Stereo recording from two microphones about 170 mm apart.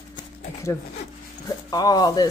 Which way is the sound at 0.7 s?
15° left (ahead or behind).